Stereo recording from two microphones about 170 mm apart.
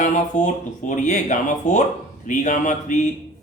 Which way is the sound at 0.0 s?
50° left (ahead or behind).